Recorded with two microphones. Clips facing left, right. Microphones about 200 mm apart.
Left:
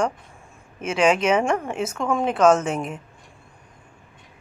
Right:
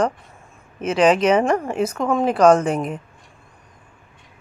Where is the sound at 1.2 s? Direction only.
5° left (ahead or behind).